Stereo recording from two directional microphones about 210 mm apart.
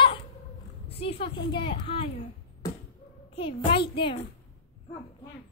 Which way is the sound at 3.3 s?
25° left (ahead or behind).